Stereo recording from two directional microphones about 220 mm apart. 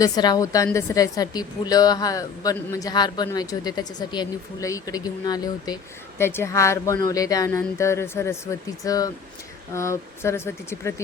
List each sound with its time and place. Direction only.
0.0 s a woman's voice: 15° left (ahead or behind)